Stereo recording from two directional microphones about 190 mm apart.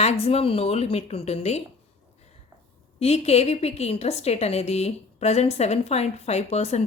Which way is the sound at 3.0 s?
35° left (ahead or behind).